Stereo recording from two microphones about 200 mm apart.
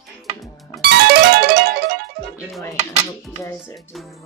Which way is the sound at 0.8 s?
55° right (ahead or behind).